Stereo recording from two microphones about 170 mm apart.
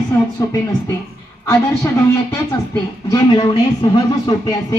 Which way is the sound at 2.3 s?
20° left (ahead or behind).